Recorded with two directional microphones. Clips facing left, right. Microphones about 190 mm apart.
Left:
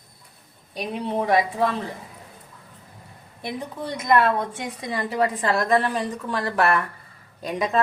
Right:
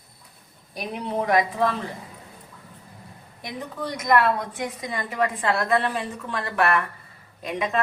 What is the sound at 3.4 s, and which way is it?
A woman's voice, 30° left (ahead or behind).